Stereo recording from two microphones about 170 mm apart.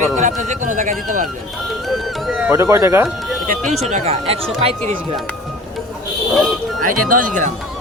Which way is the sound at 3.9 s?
40° right (ahead or behind).